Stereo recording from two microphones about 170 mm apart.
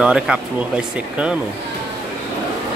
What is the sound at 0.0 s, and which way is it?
Speech, 5° right (ahead or behind).